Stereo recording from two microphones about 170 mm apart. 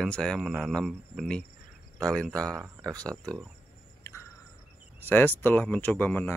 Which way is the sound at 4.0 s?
15° left (ahead or behind).